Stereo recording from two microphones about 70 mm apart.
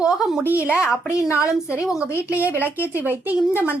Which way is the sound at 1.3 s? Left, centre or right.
Left.